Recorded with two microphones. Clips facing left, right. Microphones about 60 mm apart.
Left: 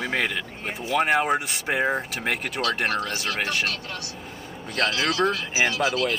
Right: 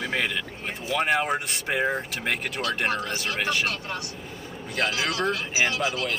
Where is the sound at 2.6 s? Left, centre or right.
Right.